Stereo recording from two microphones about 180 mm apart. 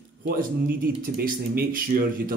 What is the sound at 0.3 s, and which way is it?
Speech, 55° right (ahead or behind).